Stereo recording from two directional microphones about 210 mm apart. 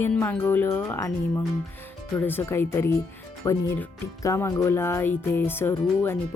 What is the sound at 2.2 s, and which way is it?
A woman's voice, 10° left (ahead or behind).